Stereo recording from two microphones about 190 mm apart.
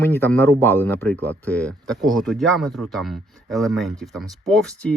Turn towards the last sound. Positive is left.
turn(degrees=5)  # may be behind; listen again after turning